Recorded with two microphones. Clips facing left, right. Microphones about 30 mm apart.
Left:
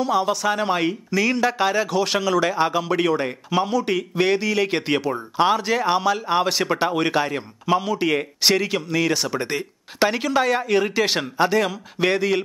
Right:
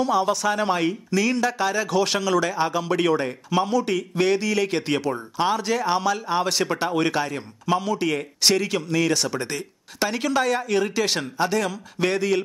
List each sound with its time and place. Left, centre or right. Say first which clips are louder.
0.0 s speech: left 1 dB; centre
1.9 s speech: left 1 dB; centre